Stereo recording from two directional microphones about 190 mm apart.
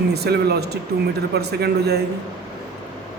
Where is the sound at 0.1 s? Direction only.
60° right (ahead or behind).